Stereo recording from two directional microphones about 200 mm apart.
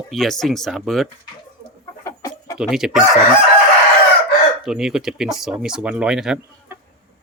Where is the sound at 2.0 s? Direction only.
15° left (ahead or behind).